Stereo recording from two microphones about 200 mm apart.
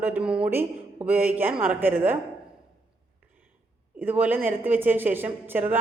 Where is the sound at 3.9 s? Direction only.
10° right (ahead or behind).